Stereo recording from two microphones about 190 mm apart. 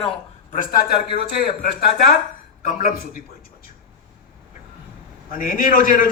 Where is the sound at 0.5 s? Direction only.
50° left (ahead or behind).